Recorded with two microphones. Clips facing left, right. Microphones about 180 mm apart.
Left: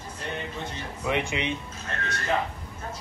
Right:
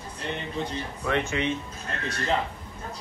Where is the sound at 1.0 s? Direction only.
15° left (ahead or behind).